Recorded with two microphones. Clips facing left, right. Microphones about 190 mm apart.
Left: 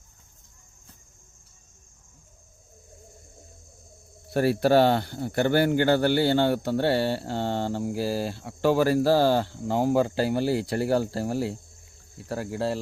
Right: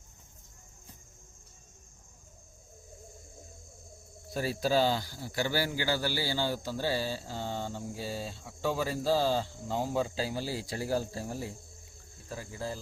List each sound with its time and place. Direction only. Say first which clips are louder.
4.3 s speech: left 9 dB; 65° left (ahead or behind)